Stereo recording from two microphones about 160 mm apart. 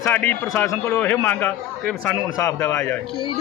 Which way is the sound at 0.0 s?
10° left (ahead or behind).